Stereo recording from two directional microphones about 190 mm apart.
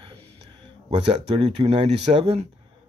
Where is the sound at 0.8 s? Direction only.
35° right (ahead or behind).